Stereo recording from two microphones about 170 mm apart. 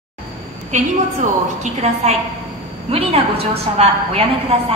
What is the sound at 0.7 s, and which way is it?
A woman's voice, 45° right (ahead or behind).